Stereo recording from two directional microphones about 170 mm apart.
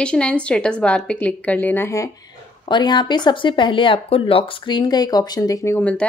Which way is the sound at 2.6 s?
25° left (ahead or behind).